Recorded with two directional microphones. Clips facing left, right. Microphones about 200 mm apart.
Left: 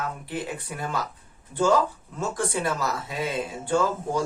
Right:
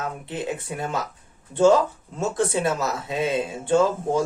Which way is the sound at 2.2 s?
25° right (ahead or behind).